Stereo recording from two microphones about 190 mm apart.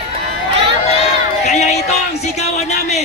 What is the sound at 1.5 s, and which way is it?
A woman's voice, 35° left (ahead or behind).